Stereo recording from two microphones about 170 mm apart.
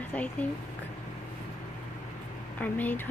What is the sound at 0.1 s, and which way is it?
Speech, 10° left (ahead or behind).